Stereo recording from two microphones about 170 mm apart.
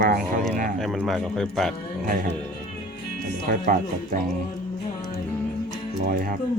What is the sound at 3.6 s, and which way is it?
Speech, 50° right (ahead or behind).